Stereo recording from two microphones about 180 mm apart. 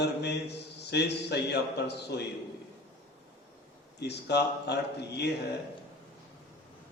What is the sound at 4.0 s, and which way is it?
A man's voice, 65° left (ahead or behind).